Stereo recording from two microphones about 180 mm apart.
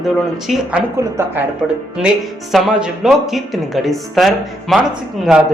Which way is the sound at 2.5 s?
Centre (ahead or behind).